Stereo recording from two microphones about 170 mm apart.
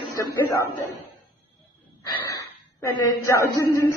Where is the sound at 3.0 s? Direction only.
20° left (ahead or behind).